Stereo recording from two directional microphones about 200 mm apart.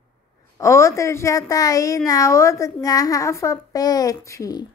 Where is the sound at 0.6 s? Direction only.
15° left (ahead or behind).